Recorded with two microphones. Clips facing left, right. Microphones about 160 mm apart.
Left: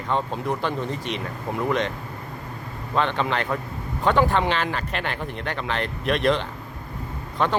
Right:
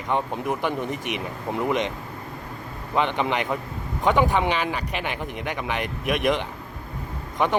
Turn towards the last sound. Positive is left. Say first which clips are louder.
# even
turn(degrees=-15)  # may be behind; listen again after turning